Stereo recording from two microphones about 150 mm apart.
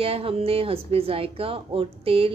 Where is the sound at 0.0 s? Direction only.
40° right (ahead or behind).